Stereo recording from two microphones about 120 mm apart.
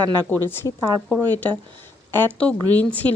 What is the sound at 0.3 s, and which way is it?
Speech, 20° left (ahead or behind).